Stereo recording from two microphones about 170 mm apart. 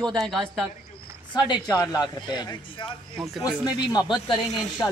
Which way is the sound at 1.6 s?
5° left (ahead or behind).